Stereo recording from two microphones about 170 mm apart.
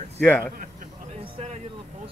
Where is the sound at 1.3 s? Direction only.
40° right (ahead or behind).